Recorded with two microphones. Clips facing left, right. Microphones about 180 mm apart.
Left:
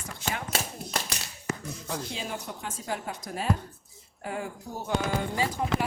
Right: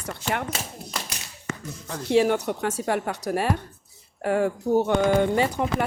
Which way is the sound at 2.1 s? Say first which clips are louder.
Right 16 dB; 70° right (ahead or behind).